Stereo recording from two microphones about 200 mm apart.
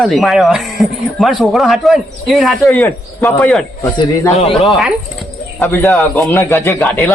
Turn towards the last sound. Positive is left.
turn(degrees=10)  # may be behind; listen again after turning